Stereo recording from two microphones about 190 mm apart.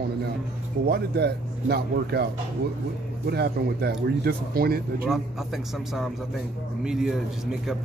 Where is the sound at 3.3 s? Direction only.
55° right (ahead or behind).